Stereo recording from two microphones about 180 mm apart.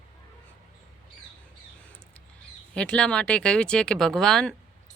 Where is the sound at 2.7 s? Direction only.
5° left (ahead or behind).